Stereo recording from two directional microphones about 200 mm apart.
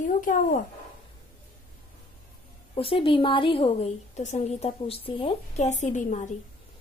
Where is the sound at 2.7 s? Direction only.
25° left (ahead or behind).